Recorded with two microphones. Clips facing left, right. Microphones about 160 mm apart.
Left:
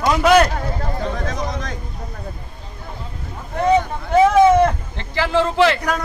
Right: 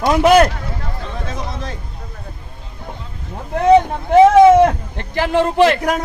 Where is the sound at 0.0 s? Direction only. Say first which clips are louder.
Right 3 dB; 25° right (ahead or behind).